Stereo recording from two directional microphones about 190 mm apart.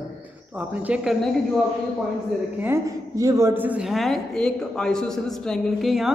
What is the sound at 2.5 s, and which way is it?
A man's voice, 15° right (ahead or behind).